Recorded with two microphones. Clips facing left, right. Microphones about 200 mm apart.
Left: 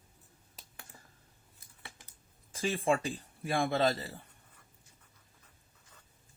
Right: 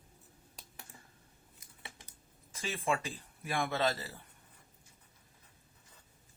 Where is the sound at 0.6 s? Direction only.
Centre (ahead or behind).